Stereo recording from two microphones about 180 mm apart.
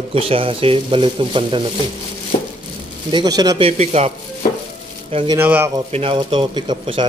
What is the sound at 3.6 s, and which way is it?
Speech, 35° right (ahead or behind).